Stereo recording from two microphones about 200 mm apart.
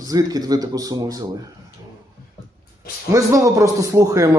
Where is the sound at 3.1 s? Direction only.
15° right (ahead or behind).